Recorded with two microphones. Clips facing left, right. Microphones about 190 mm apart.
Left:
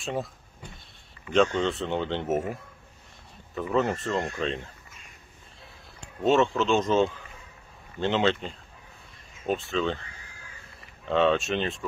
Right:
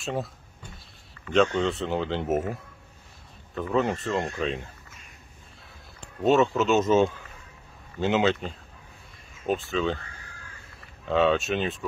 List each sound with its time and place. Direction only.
0.0 s speech: centre (ahead or behind)
1.3 s speech: centre (ahead or behind)
6.2 s speech: centre (ahead or behind)
11.1 s speech: centre (ahead or behind)